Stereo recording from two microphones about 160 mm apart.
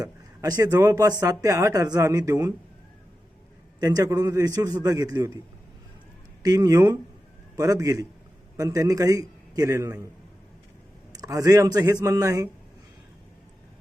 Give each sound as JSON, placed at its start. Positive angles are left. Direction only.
{"t": 0.0, "sound": "a man's voice", "side_deg": -20}
{"t": 3.8, "sound": "a man's voice", "side_deg": -20}
{"t": 6.4, "sound": "a man's voice", "side_deg": -20}
{"t": 11.1, "sound": "a man's voice", "side_deg": -25}